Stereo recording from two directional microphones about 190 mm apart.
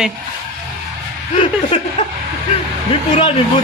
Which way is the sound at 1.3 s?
30° left (ahead or behind).